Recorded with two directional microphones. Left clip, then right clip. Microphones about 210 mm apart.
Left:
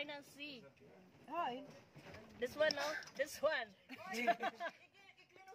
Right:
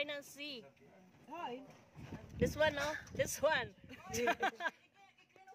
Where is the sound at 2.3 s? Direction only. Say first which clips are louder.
Right 3 dB; 45° right (ahead or behind).